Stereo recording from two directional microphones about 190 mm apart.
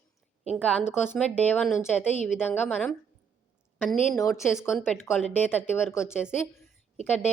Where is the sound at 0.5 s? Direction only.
5° left (ahead or behind).